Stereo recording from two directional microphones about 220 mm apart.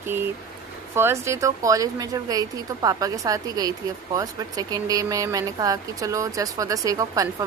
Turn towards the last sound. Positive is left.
turn(degrees=-15)  # may be behind; listen again after turning